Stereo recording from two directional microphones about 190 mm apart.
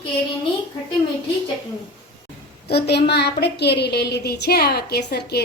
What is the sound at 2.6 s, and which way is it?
A woman's voice, 60° left (ahead or behind).